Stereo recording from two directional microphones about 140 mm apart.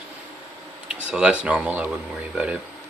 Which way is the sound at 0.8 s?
5° right (ahead or behind).